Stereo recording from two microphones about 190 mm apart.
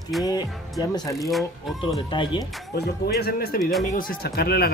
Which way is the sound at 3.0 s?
55° left (ahead or behind).